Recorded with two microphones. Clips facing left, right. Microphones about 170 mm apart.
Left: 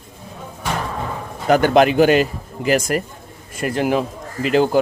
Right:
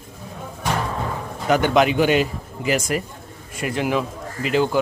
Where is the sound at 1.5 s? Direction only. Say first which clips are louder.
Left 4 dB; 45° left (ahead or behind).